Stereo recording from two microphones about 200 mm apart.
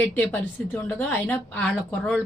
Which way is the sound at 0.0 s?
10° left (ahead or behind).